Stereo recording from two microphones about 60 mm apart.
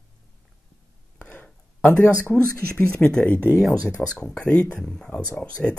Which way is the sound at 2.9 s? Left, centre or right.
Centre.